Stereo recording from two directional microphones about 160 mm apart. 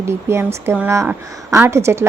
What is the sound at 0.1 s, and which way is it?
A woman's voice, 15° right (ahead or behind).